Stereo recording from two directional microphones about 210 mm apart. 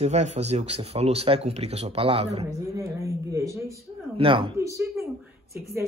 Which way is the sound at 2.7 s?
15° right (ahead or behind).